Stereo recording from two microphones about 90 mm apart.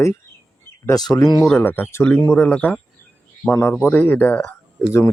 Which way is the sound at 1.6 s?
20° left (ahead or behind).